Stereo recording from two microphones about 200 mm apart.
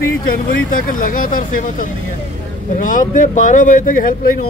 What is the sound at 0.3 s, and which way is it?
Speech, 45° left (ahead or behind).